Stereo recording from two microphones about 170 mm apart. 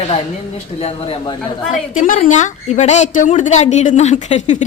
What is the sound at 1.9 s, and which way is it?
Speech, 45° left (ahead or behind).